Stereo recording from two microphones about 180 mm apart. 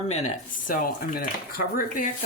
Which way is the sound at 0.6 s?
50° left (ahead or behind).